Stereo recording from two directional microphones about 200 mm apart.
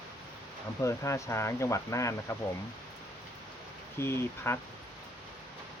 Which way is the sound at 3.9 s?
10° left (ahead or behind).